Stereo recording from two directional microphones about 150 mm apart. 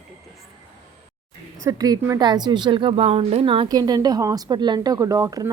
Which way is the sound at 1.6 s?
25° right (ahead or behind).